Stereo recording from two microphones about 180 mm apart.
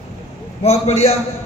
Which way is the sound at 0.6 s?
35° left (ahead or behind).